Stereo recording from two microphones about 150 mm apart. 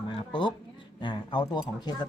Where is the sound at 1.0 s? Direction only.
30° left (ahead or behind).